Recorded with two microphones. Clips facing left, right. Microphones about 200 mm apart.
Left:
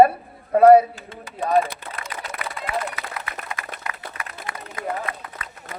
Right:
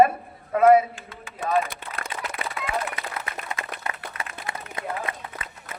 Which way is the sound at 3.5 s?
25° right (ahead or behind).